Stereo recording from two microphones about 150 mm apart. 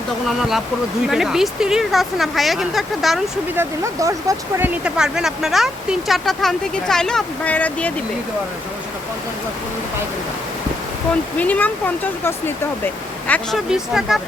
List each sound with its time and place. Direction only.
0.3 s speech: centre (ahead or behind)
3.5 s speech: 20° right (ahead or behind)
4.8 s speech: 5° right (ahead or behind)
11.3 s speech: 10° left (ahead or behind)
13.7 s speech: 5° right (ahead or behind)